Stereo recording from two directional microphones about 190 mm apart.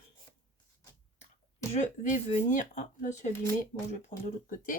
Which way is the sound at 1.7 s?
40° left (ahead or behind).